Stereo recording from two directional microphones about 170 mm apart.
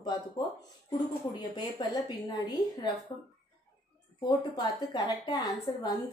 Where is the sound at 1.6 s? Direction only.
25° left (ahead or behind).